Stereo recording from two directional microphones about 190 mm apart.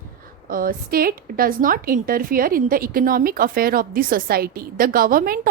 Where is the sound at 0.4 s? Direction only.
50° right (ahead or behind).